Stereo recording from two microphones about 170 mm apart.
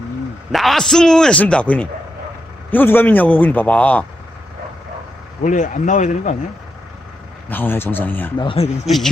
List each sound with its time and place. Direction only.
0.5 s a man's voice: centre (ahead or behind)
5.4 s speech: 50° left (ahead or behind)
7.5 s a man's voice: 10° left (ahead or behind)
8.4 s speech: 30° left (ahead or behind)